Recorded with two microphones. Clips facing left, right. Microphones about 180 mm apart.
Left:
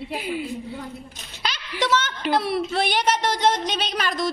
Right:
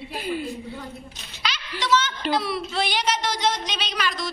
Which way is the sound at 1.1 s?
50° left (ahead or behind).